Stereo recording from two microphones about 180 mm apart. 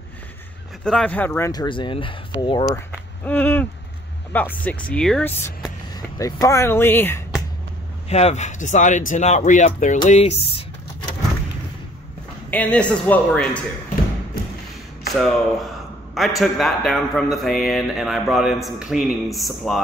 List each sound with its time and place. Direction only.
0.8 s speech: 5° left (ahead or behind)
1.5 s speech: 25° left (ahead or behind)
3.3 s speech: 10° left (ahead or behind)
5.9 s speech: 20° left (ahead or behind)
8.1 s speech: 35° left (ahead or behind)
12.4 s speech: 10° left (ahead or behind)
15.1 s speech: centre (ahead or behind)